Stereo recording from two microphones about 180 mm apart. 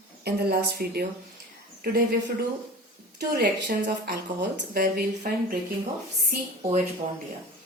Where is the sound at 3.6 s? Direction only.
50° right (ahead or behind).